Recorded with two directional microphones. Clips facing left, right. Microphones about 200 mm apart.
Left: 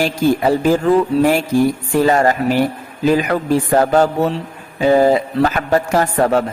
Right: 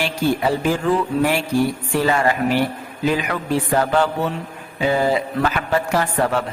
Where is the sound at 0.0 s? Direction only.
40° left (ahead or behind).